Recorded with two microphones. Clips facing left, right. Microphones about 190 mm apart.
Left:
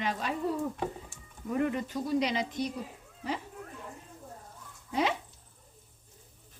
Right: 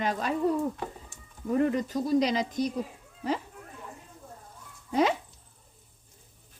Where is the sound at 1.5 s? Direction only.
35° right (ahead or behind).